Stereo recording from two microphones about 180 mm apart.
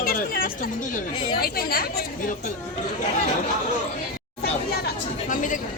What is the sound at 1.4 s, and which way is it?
Speech, 55° left (ahead or behind).